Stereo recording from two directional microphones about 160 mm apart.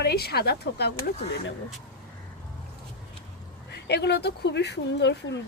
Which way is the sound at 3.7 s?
90° left.